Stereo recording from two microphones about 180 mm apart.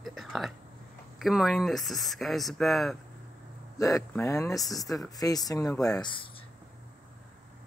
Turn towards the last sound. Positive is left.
turn(degrees=20)  # may be behind; listen again after turning